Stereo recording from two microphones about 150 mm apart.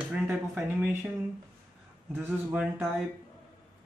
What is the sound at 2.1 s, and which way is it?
Speech, 10° right (ahead or behind).